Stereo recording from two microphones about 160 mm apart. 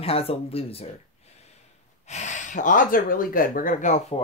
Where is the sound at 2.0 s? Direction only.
45° left (ahead or behind).